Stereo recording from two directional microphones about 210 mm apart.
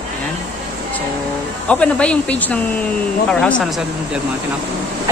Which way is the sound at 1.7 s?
5° left (ahead or behind).